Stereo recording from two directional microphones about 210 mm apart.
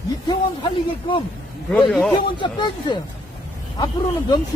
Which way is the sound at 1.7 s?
5° left (ahead or behind).